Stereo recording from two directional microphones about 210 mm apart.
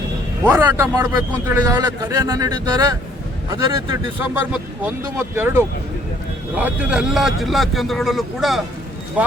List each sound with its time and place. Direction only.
0.4 s a man's voice: 10° right (ahead or behind)